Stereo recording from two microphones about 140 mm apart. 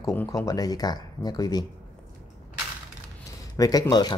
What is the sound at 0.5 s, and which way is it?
Speech, 25° left (ahead or behind).